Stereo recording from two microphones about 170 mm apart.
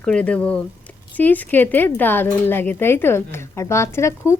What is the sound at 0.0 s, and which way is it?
Speech, 5° left (ahead or behind).